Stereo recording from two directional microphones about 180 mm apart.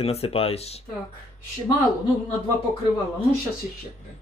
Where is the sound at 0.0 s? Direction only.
35° left (ahead or behind).